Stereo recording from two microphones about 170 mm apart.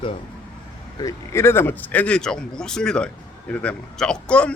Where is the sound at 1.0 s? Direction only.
15° left (ahead or behind).